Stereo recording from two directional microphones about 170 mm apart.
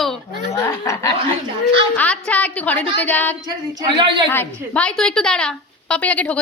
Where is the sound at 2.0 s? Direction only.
10° left (ahead or behind).